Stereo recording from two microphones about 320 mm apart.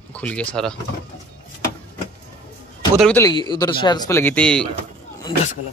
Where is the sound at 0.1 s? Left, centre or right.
Centre.